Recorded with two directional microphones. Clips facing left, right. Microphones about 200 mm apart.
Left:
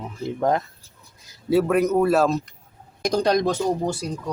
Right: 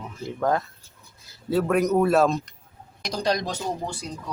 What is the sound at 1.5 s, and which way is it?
Speech, 5° left (ahead or behind).